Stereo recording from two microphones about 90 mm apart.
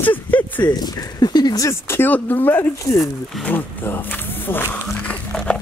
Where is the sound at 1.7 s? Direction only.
25° left (ahead or behind).